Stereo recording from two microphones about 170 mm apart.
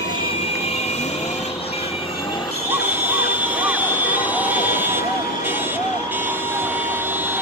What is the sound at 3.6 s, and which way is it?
Vehicle, 10° right (ahead or behind).